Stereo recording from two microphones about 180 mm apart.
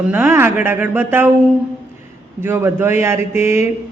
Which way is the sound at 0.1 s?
10° right (ahead or behind).